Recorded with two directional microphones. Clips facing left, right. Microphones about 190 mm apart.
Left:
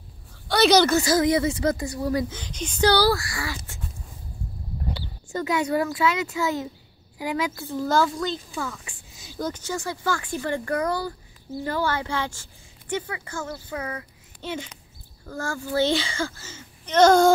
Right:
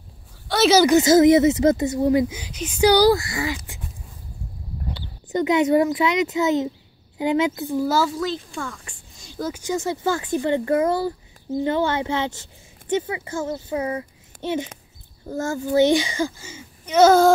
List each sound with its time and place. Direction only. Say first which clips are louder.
0.5 s speech: right 1 dB; centre (ahead or behind)
0.8 s speech: right 7 dB; 20° right (ahead or behind)
5.3 s speech: right 6 dB; 20° right (ahead or behind); by 9.5 s 5° left (ahead or behind)
9.5 s speech: right 8 dB; 15° right (ahead or behind)